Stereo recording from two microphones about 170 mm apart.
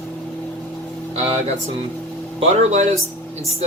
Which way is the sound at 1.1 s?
35° right (ahead or behind).